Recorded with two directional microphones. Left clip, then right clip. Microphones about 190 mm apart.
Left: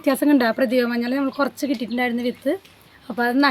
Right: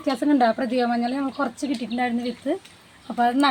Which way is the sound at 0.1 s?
55° left (ahead or behind).